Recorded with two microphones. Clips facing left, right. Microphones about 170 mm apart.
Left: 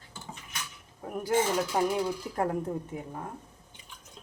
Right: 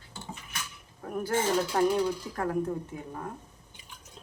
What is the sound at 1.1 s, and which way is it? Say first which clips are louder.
A woman's voice: even; 15° left (ahead or behind).